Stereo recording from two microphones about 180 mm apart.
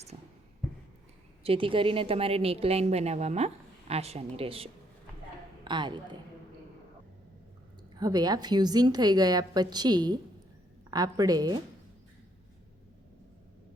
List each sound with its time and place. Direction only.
0.1 s a sound: 35° right (ahead or behind)
1.5 s a woman's voice: 30° right (ahead or behind)
7.9 s a woman's voice: 20° right (ahead or behind)